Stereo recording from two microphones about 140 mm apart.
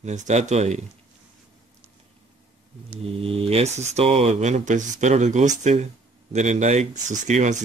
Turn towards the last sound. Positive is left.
turn(degrees=-55)  # may be behind; listen again after turning